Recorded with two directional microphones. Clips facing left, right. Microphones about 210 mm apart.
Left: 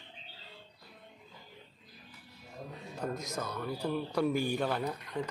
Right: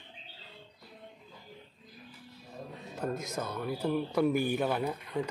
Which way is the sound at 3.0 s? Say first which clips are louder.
Right 2 dB; 25° right (ahead or behind).